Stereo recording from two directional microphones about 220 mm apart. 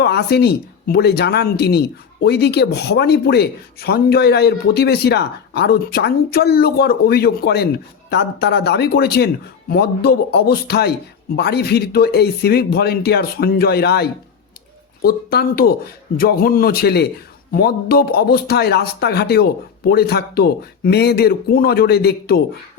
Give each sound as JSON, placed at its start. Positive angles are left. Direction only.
{"t": 0.0, "sound": "a man's voice", "side_deg": 45}